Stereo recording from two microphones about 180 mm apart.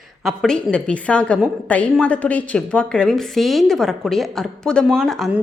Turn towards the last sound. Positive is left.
turn(degrees=0)  # may be behind; listen again after turning